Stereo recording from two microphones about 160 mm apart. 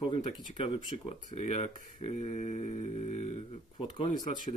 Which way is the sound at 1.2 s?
45° left (ahead or behind).